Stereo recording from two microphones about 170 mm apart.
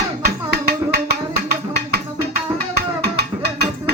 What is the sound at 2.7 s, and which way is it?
Music, 75° right (ahead or behind).